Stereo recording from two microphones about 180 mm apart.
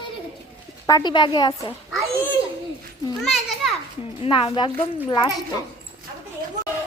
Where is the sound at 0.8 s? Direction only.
25° left (ahead or behind).